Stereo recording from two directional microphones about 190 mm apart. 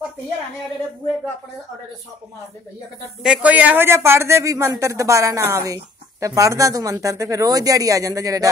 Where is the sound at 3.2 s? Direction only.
5° right (ahead or behind).